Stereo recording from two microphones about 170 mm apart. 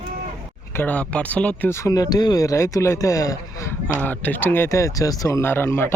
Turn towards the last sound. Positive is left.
turn(degrees=15)  # may be behind; listen again after turning